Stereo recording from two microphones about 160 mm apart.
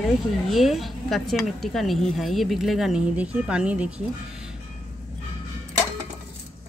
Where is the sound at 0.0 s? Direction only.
Centre (ahead or behind).